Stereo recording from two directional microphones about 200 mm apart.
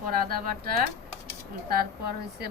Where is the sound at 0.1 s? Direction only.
45° right (ahead or behind).